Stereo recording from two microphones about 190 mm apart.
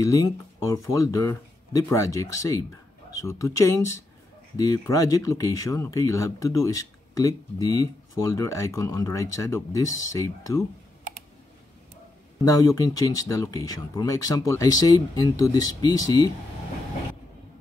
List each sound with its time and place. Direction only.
0.0 s speech: 15° left (ahead or behind)
12.4 s speech: 20° left (ahead or behind)